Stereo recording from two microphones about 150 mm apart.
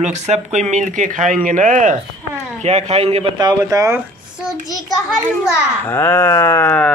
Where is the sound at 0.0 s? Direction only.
50° right (ahead or behind).